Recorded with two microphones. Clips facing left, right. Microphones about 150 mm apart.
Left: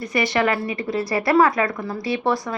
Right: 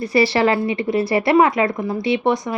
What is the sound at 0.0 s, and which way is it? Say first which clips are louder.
Speech: right 4 dB; 30° right (ahead or behind).